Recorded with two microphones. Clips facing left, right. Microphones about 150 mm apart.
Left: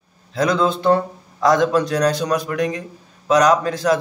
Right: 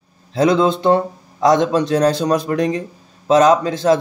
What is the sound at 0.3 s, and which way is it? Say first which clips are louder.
Speech: right 4 dB; 25° right (ahead or behind).